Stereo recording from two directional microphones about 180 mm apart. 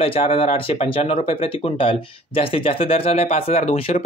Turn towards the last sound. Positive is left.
turn(degrees=35)  # may be behind; listen again after turning